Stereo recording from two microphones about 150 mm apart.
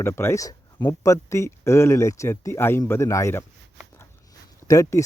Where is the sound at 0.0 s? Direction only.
15° left (ahead or behind).